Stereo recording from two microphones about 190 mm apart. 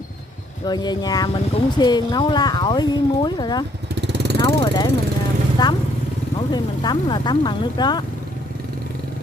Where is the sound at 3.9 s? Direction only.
65° right (ahead or behind).